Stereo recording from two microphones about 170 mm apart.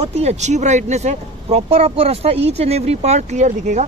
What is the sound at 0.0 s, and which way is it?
Speech, 40° right (ahead or behind).